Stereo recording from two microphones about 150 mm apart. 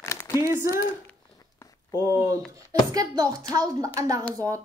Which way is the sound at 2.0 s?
20° right (ahead or behind).